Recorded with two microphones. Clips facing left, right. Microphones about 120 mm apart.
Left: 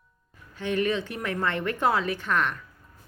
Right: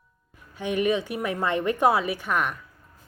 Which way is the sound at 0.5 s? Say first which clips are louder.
Right 2 dB; 15° right (ahead or behind).